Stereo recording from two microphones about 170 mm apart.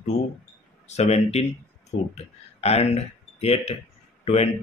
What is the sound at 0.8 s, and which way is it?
Speech, 40° left (ahead or behind).